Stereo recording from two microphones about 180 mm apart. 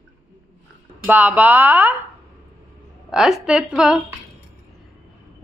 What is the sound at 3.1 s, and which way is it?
Speech, 5° right (ahead or behind).